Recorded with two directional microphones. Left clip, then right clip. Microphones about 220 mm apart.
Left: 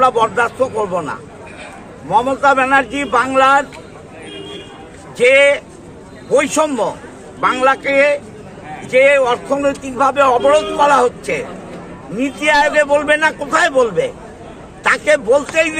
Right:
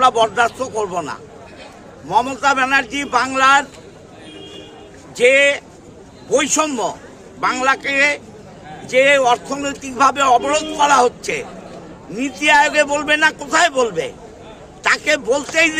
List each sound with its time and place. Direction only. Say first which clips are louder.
0.0 s a man's voice: left 1 dB; 25° right (ahead or behind)
5.1 s a man's voice: left 3 dB; 25° right (ahead or behind)